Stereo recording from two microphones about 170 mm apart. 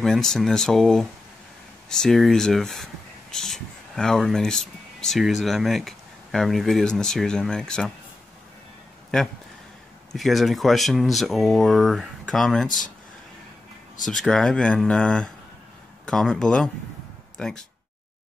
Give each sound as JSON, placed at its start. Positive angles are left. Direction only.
{"t": 0.0, "sound": "speech", "side_deg": 0}
{"t": 10.1, "sound": "speech", "side_deg": 0}
{"t": 12.6, "sound": "speech", "side_deg": 50}
{"t": 14.0, "sound": "speech", "side_deg": 0}